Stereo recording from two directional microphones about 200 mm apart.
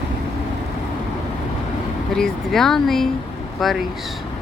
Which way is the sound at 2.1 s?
Centre (ahead or behind).